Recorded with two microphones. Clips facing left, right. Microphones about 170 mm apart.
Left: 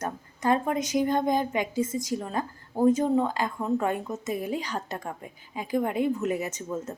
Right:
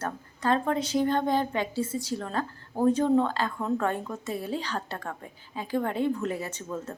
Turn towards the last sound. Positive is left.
turn(degrees=10)  # may be behind; listen again after turning